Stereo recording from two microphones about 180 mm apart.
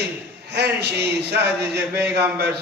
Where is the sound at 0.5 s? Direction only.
65° right (ahead or behind).